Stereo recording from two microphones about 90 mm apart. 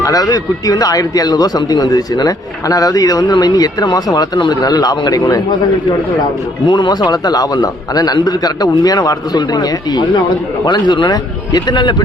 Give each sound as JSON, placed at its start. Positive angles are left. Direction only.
{"t": 0.0, "sound": "speech", "side_deg": 40}
{"t": 6.7, "sound": "speech", "side_deg": 55}
{"t": 10.7, "sound": "speech", "side_deg": 60}